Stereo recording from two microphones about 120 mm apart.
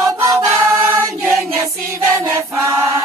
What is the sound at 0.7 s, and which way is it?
Choir, 25° right (ahead or behind).